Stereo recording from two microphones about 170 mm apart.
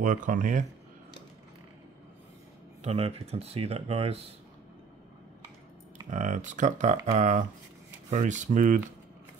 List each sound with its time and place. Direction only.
0.0 s speech: 50° right (ahead or behind)
2.8 s speech: 40° right (ahead or behind)
6.0 s speech: 45° right (ahead or behind)